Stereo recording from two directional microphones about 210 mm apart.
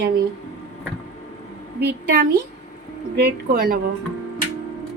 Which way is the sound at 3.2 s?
45° right (ahead or behind).